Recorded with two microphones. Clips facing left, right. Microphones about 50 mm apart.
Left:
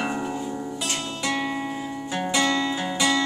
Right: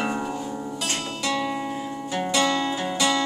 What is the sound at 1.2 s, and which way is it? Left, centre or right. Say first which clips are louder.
Music: right 1 dB; left.